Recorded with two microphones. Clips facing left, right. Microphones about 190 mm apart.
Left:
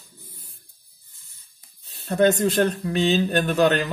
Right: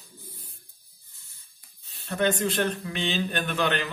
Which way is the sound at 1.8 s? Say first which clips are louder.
Left 7 dB; 40° left (ahead or behind).